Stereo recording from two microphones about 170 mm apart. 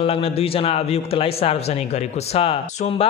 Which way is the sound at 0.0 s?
35° left (ahead or behind).